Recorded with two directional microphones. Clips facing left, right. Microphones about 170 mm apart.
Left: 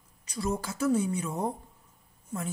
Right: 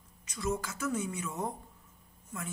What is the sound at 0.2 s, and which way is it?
A woman's voice, 35° left (ahead or behind).